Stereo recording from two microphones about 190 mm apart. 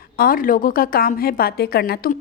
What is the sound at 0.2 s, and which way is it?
A woman's voice, 50° left (ahead or behind).